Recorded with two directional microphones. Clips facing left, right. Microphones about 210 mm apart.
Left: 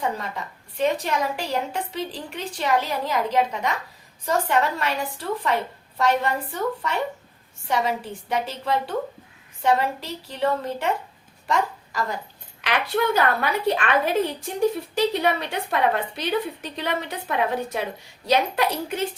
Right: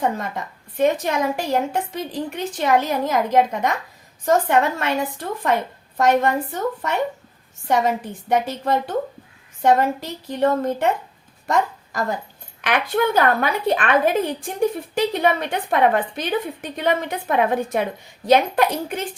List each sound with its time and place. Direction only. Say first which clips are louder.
0.0 s a woman's voice: right 4 dB; 50° right (ahead or behind)
7.7 s a woman's voice: right 4 dB; 50° right (ahead or behind)